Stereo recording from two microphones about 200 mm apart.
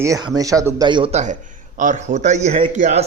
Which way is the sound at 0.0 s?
15° right (ahead or behind).